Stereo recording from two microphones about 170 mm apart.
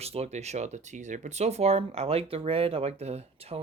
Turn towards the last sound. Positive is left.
turn(degrees=-35)  # may be behind; listen again after turning